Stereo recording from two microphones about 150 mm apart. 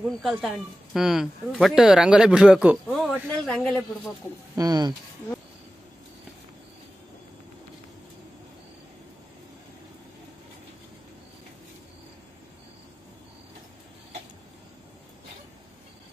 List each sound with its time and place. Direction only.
0.0 s speech: centre (ahead or behind)
2.9 s speech: 5° left (ahead or behind)
4.6 s speech: 25° right (ahead or behind)